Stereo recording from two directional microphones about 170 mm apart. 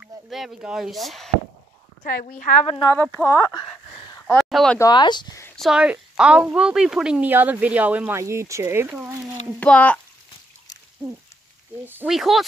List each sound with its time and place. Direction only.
0.0 s speech: centre (ahead or behind)
2.0 s a woman's voice: 50° left (ahead or behind)
2.9 s speech: 15° left (ahead or behind)
4.4 s speech: centre (ahead or behind)
4.7 s speech: 25° left (ahead or behind)
5.6 s speech: 5° right (ahead or behind)
9.6 s speech: 10° left (ahead or behind)
11.8 s speech: 10° right (ahead or behind)
12.2 s speech: centre (ahead or behind)